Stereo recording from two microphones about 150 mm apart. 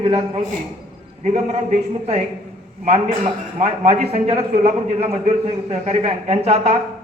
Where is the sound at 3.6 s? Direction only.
45° right (ahead or behind).